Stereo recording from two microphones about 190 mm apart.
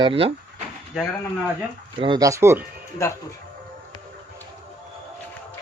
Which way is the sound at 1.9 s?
25° right (ahead or behind).